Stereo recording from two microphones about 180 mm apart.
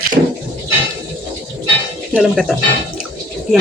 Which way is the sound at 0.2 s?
55° right (ahead or behind).